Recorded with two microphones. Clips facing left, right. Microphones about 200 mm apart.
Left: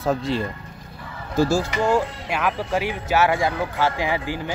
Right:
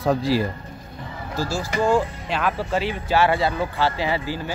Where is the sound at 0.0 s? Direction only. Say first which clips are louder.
Right 2 dB; centre (ahead or behind).